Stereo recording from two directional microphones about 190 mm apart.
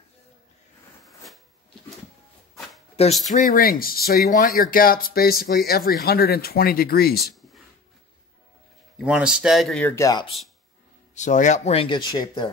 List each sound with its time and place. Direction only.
1.0 s a sound: centre (ahead or behind)
3.3 s speech: 45° left (ahead or behind)
8.9 s speech: 5° right (ahead or behind)
9.9 s speech: 20° left (ahead or behind)
11.1 s speech: 40° left (ahead or behind); by 12.4 s 20° left (ahead or behind)